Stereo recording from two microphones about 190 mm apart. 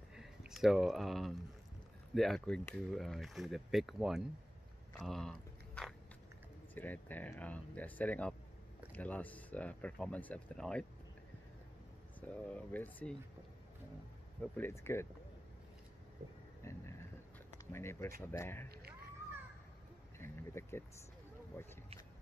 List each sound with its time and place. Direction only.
0.1 s a sound: centre (ahead or behind)
2.1 s speech: centre (ahead or behind)
4.9 s biting: centre (ahead or behind)
6.7 s speech: 10° left (ahead or behind)
12.2 s speech: 5° left (ahead or behind)
14.4 s speech: 10° left (ahead or behind)
16.6 s speech: 15° left (ahead or behind)
18.7 s a sound: 55° right (ahead or behind)
20.2 s a sound: 15° left (ahead or behind)
21.6 s speech: 10° left (ahead or behind)